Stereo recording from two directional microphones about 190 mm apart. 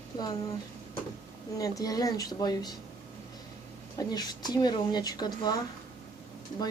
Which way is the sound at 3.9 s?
20° left (ahead or behind).